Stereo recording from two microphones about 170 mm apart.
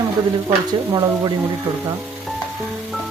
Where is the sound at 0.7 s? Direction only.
25° right (ahead or behind).